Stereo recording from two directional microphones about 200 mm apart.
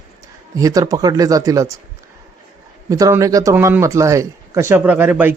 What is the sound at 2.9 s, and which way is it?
A man's voice, 15° right (ahead or behind).